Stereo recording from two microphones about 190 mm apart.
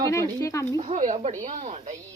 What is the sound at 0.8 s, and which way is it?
Speech, 40° right (ahead or behind).